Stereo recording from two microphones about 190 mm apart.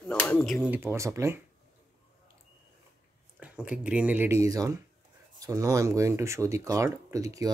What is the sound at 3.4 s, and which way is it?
Speech, 5° right (ahead or behind).